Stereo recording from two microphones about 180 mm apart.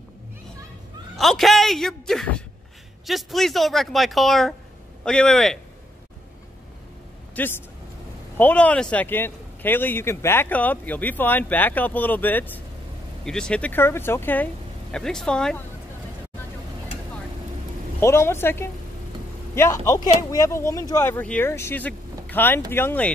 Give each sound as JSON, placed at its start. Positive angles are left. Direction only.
{"t": 1.1, "sound": "speech", "side_deg": 0}
{"t": 7.3, "sound": "speech", "side_deg": 10}
{"t": 18.0, "sound": "speech", "side_deg": 15}